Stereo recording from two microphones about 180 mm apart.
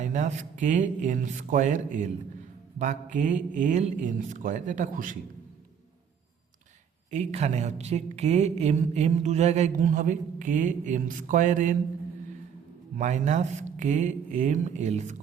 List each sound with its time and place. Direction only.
0.0 s speech: 45° right (ahead or behind)
7.1 s a woman's voice: 40° right (ahead or behind)
13.0 s a woman's voice: 40° right (ahead or behind)